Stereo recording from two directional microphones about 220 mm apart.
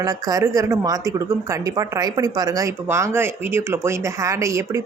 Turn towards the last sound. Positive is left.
turn(degrees=-15)  # may be behind; listen again after turning